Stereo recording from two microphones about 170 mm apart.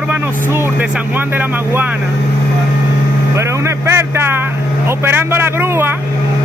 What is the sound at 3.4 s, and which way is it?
Speech, 15° right (ahead or behind).